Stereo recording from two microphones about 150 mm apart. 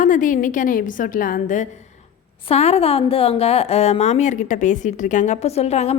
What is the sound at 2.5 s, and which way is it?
A woman's voice, 40° left (ahead or behind).